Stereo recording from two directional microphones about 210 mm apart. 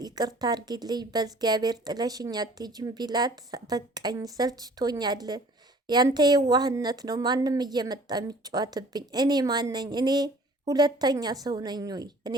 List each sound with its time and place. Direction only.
0.0 s a woman's voice: 20° right (ahead or behind)